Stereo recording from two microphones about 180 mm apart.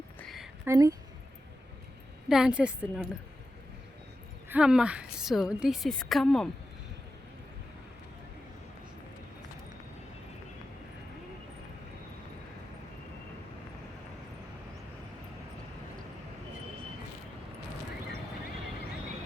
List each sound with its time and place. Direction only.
0.2 s a sound: centre (ahead or behind)
0.6 s speech: 15° right (ahead or behind)
2.3 s a woman's voice: 5° right (ahead or behind)
4.4 s a woman's voice: 5° right (ahead or behind)